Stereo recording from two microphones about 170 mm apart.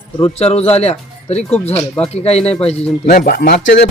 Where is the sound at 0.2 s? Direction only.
40° left (ahead or behind).